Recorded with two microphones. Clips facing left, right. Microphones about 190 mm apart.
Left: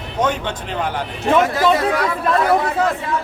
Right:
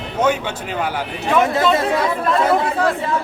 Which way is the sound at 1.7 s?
25° right (ahead or behind).